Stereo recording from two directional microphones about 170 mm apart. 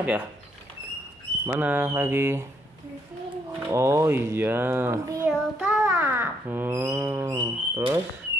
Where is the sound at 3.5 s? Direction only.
15° right (ahead or behind).